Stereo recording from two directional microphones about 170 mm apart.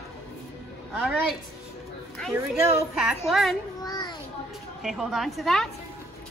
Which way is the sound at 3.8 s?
25° left (ahead or behind).